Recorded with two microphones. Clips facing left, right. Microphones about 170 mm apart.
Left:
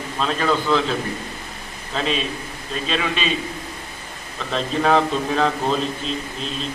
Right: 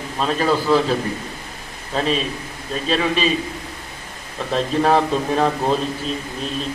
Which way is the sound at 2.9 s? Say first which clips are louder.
Right 5 dB; 40° right (ahead or behind).